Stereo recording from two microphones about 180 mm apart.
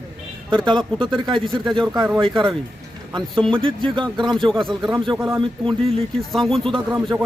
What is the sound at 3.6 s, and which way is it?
Speech, 25° right (ahead or behind).